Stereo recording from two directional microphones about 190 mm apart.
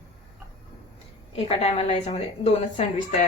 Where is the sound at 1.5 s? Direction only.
30° left (ahead or behind).